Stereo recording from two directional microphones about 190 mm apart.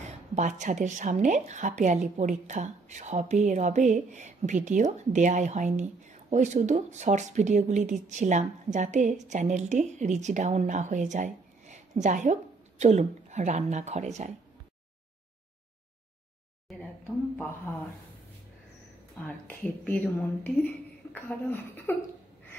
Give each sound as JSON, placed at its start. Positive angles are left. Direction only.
{"t": 0.3, "sound": "speech", "side_deg": -40}
{"t": 16.7, "sound": "a sound", "side_deg": 0}
{"t": 19.2, "sound": "a woman's voice", "side_deg": 10}